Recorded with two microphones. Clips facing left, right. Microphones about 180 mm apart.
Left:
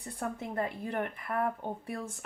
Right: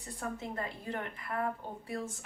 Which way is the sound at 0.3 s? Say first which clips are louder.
Left 5 dB; 55° left (ahead or behind).